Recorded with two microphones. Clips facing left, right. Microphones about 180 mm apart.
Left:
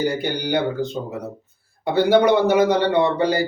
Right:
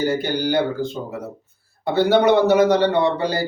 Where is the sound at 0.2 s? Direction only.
15° left (ahead or behind).